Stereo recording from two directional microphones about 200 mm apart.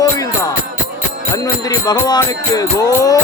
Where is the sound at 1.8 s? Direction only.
20° left (ahead or behind).